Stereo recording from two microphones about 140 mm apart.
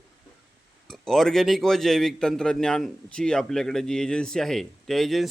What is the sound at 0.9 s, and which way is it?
A man's voice, 5° left (ahead or behind).